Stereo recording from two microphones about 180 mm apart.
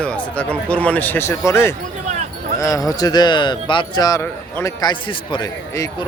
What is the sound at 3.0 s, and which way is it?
A man's voice, 25° left (ahead or behind).